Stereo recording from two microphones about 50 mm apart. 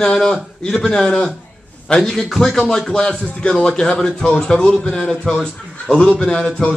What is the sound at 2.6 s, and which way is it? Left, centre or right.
A man's voice, left.